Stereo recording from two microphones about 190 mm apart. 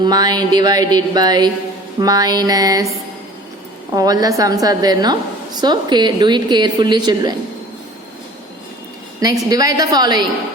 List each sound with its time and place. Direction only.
0.0 s a woman's voice: 20° right (ahead or behind)
3.9 s a woman's voice: 20° right (ahead or behind)
9.5 s a woman's voice: 20° right (ahead or behind)